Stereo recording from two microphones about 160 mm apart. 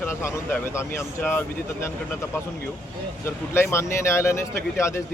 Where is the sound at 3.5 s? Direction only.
15° left (ahead or behind).